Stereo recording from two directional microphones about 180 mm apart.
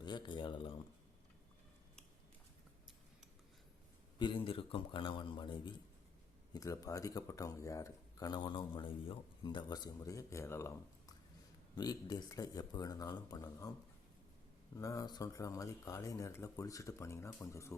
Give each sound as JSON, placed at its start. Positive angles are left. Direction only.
{"t": 0.0, "sound": "speech", "side_deg": 25}
{"t": 4.2, "sound": "speech", "side_deg": 30}
{"t": 14.8, "sound": "speech", "side_deg": 20}